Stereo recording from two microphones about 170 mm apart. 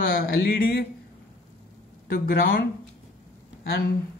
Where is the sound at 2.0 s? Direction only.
60° left (ahead or behind).